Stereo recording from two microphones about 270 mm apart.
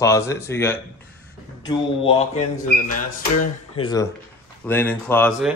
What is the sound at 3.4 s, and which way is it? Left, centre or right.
Speech, left.